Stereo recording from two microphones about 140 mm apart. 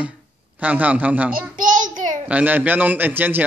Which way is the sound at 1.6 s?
70° right (ahead or behind).